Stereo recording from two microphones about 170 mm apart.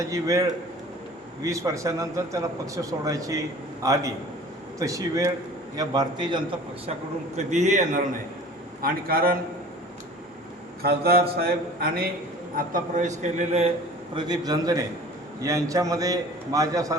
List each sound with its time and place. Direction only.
0.0 s a man's voice: 20° right (ahead or behind)
7.3 s a man's voice: 45° right (ahead or behind)
8.8 s a sound: 60° right (ahead or behind)
10.8 s a sound: 65° right (ahead or behind)
12.5 s a man's voice: 50° right (ahead or behind)
14.2 s a man's voice: 25° right (ahead or behind)